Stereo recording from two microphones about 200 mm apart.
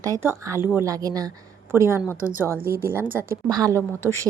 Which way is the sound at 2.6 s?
45° right (ahead or behind).